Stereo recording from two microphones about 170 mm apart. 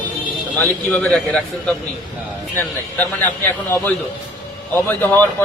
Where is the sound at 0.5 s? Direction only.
10° left (ahead or behind).